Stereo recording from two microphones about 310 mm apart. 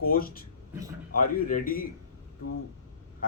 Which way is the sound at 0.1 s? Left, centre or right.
Left.